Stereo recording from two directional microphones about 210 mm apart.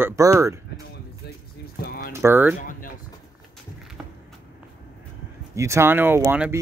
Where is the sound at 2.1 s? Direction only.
10° right (ahead or behind).